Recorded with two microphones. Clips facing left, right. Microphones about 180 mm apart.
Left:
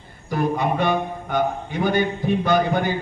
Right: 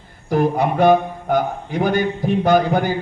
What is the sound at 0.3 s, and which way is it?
A man's voice, 45° right (ahead or behind).